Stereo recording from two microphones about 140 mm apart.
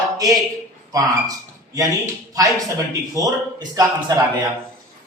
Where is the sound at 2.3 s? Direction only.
25° right (ahead or behind).